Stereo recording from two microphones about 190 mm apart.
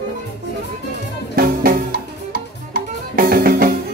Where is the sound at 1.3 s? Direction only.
50° right (ahead or behind).